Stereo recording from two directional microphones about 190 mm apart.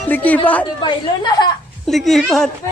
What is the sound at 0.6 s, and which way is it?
Speech, 25° left (ahead or behind).